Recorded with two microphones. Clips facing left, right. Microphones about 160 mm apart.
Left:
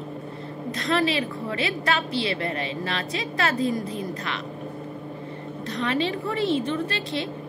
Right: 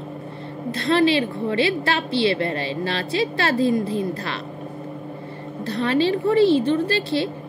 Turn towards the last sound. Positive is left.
turn(degrees=-30)  # may be behind; listen again after turning